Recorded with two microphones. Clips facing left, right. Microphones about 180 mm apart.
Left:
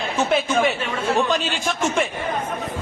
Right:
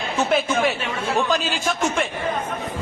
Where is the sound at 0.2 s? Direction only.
Centre (ahead or behind).